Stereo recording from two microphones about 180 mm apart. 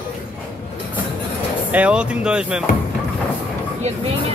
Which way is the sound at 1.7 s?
5° right (ahead or behind).